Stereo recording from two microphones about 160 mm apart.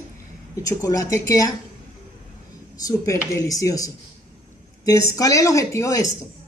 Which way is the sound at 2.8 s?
20° left (ahead or behind).